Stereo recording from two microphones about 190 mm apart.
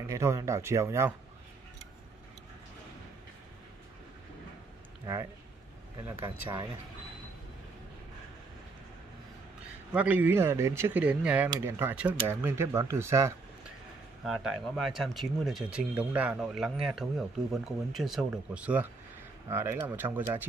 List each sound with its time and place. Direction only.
0.0 s speech: 15° right (ahead or behind)
6.0 s speech: 10° right (ahead or behind)
9.9 s speech: 10° right (ahead or behind)
14.2 s speech: centre (ahead or behind)